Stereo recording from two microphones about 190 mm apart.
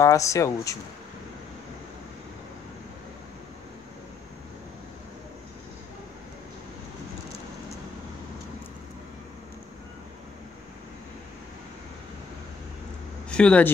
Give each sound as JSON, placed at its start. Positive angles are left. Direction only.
{"t": 0.0, "sound": "speech", "side_deg": 15}
{"t": 13.3, "sound": "speech", "side_deg": 5}